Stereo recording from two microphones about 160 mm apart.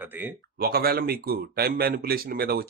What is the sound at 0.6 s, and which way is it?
Speech, 75° right (ahead or behind).